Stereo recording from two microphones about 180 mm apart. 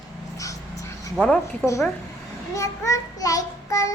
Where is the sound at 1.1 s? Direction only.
5° left (ahead or behind).